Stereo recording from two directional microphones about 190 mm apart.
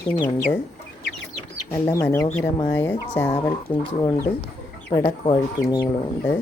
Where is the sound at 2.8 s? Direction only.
10° left (ahead or behind).